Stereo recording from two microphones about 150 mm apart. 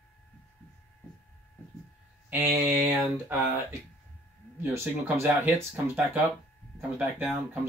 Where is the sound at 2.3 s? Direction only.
15° right (ahead or behind).